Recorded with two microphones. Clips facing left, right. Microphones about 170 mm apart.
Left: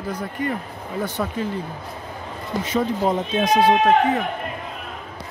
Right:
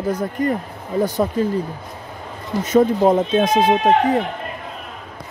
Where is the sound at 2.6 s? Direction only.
45° right (ahead or behind).